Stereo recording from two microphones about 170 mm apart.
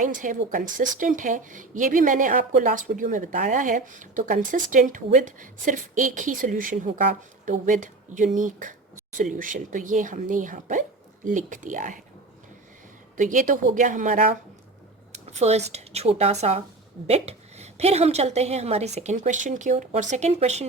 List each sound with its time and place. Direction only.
0.0 s speech: 50° right (ahead or behind)
13.1 s a woman's voice: 50° right (ahead or behind)